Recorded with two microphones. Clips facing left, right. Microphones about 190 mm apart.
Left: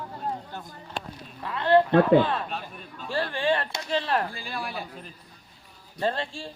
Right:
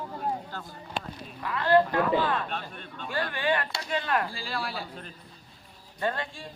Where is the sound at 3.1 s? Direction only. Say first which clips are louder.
Left 3 dB; 30° left (ahead or behind).